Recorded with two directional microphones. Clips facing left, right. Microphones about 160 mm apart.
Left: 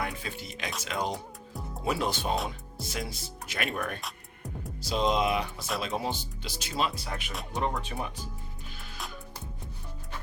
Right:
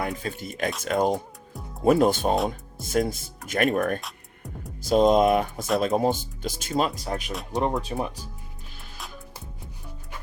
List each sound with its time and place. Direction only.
0.0 s speech: 45° right (ahead or behind)
4.0 s music: centre (ahead or behind)
4.8 s speech: 50° right (ahead or behind)